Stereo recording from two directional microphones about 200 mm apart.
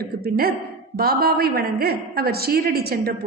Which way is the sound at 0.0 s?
50° right (ahead or behind).